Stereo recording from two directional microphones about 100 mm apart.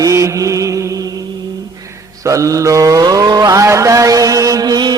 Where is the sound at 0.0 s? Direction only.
30° right (ahead or behind).